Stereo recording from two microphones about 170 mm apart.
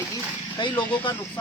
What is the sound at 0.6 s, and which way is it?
Speech, 30° left (ahead or behind).